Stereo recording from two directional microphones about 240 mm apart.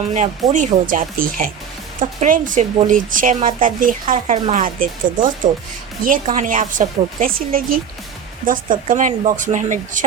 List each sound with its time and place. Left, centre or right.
0.5 s speech: right